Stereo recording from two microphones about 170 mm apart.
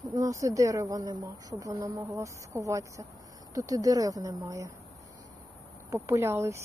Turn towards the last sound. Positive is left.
turn(degrees=-15)  # may be behind; listen again after turning